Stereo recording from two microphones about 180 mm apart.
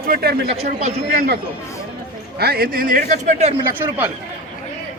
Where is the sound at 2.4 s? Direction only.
60° right (ahead or behind); by 3.6 s 40° right (ahead or behind).